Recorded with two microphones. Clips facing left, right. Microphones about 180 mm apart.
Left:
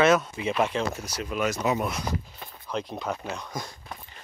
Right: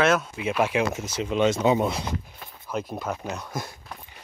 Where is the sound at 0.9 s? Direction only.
25° right (ahead or behind).